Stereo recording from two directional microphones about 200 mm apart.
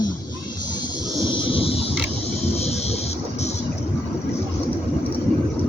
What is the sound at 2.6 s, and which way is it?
Vehicle, 30° left (ahead or behind).